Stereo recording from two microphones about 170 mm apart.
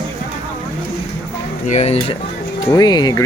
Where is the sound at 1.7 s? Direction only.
40° left (ahead or behind).